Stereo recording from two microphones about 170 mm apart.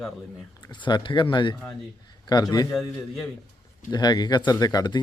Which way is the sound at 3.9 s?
25° left (ahead or behind).